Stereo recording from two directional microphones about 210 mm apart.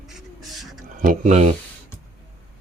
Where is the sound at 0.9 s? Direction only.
35° right (ahead or behind).